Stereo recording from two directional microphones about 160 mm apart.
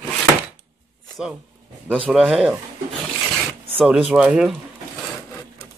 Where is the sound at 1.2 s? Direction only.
5° right (ahead or behind).